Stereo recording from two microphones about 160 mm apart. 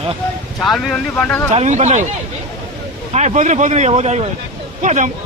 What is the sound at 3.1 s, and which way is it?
Speech, 45° right (ahead or behind).